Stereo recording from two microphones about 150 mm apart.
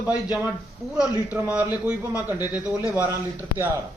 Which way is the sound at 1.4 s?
10° right (ahead or behind).